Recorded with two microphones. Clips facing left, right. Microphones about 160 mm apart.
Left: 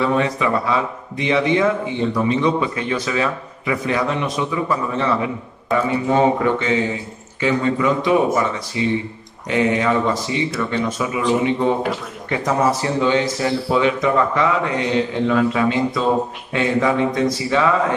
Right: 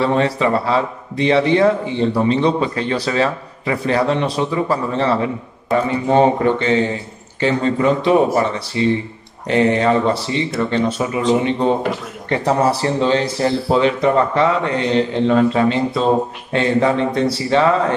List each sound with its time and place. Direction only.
0.0 s a man's voice: 30° right (ahead or behind)